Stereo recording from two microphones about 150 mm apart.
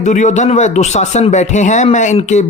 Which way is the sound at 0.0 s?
55° left (ahead or behind).